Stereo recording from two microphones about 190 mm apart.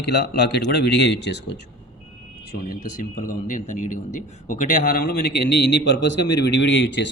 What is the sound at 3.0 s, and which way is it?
A man's voice, 40° left (ahead or behind).